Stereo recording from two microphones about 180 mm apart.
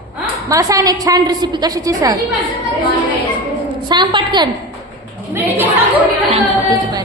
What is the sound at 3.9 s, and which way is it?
Speech, 25° right (ahead or behind).